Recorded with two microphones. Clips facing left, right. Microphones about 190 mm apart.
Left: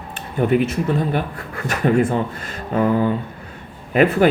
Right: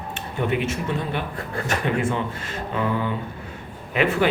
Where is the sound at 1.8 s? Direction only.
40° left (ahead or behind).